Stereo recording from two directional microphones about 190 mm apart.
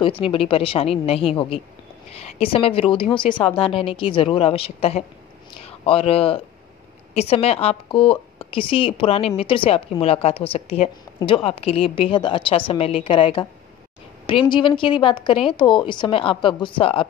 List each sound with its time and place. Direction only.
0.0 s a woman's voice: 30° left (ahead or behind)